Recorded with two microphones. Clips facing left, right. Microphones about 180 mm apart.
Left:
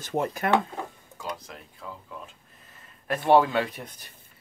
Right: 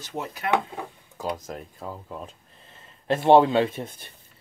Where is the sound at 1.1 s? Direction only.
45° right (ahead or behind).